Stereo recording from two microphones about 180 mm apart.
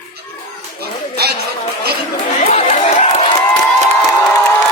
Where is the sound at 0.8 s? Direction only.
60° right (ahead or behind).